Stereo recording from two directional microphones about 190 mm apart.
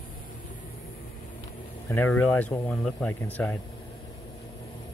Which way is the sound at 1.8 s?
10° left (ahead or behind).